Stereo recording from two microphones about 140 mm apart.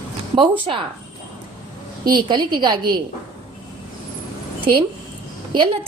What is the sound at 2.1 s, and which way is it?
Speech, 35° right (ahead or behind).